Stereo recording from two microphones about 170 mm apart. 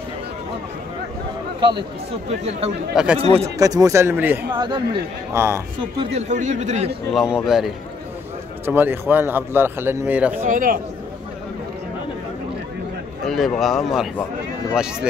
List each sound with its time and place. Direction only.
1.6 s speech: 25° right (ahead or behind)
2.2 s speech: 40° right (ahead or behind)
2.9 s speech: 5° right (ahead or behind)
3.4 s a man's voice: 20° right (ahead or behind)
4.5 s speech: 25° right (ahead or behind)
6.1 s a man's voice: 45° right (ahead or behind)
7.1 s speech: centre (ahead or behind)
8.6 s a man's voice: 10° right (ahead or behind)
10.4 s a man's voice: 55° right (ahead or behind)
13.3 s speech: centre (ahead or behind)